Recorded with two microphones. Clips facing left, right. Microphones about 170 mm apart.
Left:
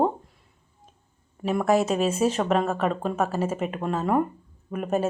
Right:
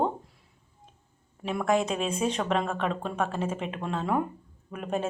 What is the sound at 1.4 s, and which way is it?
A woman's voice, 5° left (ahead or behind).